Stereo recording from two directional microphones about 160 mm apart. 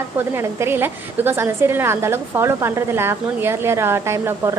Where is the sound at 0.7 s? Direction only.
15° right (ahead or behind).